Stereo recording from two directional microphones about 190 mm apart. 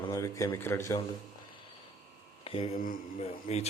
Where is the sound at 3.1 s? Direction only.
35° left (ahead or behind).